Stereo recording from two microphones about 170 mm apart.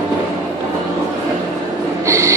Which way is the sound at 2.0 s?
15° right (ahead or behind).